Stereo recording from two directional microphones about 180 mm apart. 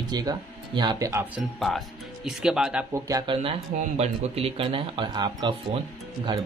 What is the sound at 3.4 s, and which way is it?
Speech, 35° right (ahead or behind).